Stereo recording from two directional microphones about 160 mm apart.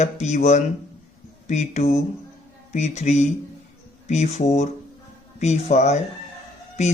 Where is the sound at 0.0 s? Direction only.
45° left (ahead or behind).